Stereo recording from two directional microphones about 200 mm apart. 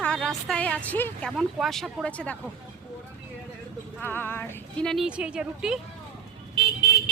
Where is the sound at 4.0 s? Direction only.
10° left (ahead or behind).